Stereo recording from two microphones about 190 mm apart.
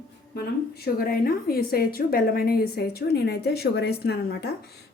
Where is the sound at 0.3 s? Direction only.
55° left (ahead or behind).